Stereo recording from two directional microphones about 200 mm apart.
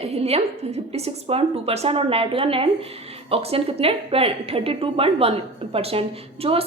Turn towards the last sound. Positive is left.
turn(degrees=-30)  # may be behind; listen again after turning